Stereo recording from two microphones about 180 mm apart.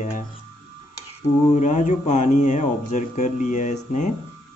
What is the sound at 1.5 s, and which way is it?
Speech, 45° left (ahead or behind).